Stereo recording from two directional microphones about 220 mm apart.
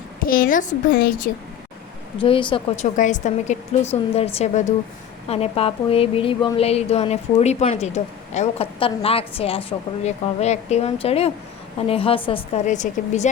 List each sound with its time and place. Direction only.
0.2 s a woman's voice: 40° left (ahead or behind)
2.1 s speech: 25° left (ahead or behind)
2.9 s a woman's voice: 35° left (ahead or behind)